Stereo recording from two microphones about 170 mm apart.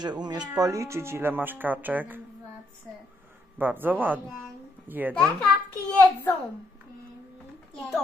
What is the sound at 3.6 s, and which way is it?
Speech, 10° right (ahead or behind).